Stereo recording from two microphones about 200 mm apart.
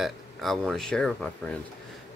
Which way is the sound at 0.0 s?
Centre (ahead or behind).